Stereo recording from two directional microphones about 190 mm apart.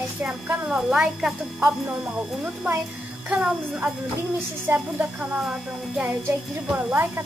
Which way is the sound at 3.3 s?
5° right (ahead or behind).